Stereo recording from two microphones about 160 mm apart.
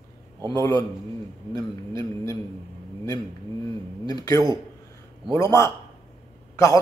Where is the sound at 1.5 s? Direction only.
20° left (ahead or behind).